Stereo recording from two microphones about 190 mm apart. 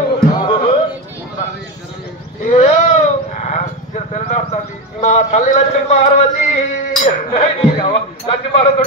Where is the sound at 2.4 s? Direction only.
35° left (ahead or behind).